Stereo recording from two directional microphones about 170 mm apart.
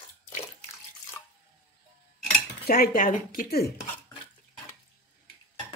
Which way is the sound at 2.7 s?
60° left (ahead or behind).